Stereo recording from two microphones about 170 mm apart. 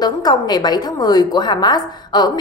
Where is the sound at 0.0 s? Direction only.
25° left (ahead or behind).